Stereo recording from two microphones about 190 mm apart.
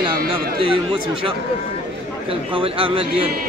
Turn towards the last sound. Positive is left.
turn(degrees=-30)  # may be behind; listen again after turning